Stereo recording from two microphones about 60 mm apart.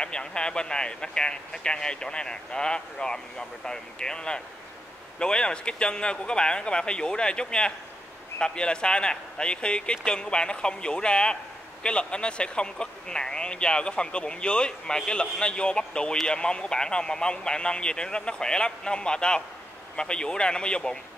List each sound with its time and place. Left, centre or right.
0.0 s speech: centre